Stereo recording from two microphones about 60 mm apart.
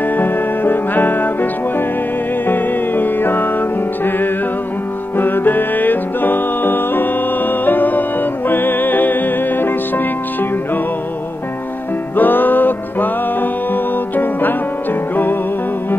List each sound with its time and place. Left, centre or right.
0.0 s music: left
12.2 s music: left